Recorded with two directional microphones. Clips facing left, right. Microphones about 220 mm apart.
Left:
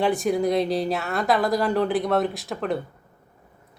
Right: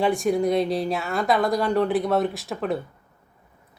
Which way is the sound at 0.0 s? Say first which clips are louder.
Right 1 dB; centre (ahead or behind).